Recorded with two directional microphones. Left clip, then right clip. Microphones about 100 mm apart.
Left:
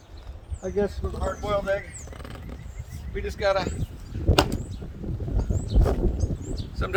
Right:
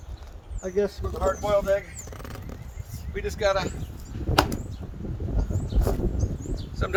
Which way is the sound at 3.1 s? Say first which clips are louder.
Even; 25° left (ahead or behind).